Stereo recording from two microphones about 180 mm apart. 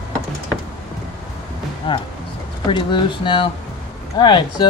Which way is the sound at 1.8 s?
30° left (ahead or behind).